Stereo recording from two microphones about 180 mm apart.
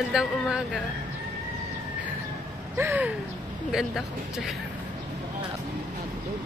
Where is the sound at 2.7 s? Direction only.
10° right (ahead or behind).